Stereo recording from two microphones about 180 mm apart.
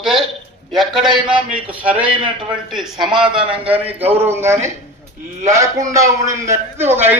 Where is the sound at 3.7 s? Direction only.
35° right (ahead or behind).